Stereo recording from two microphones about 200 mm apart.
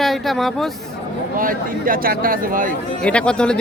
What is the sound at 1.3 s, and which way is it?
Speech, 45° right (ahead or behind).